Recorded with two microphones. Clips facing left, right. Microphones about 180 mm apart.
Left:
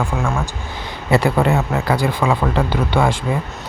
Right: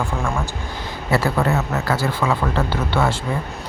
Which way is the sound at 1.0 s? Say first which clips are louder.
Left 4 dB; 20° left (ahead or behind).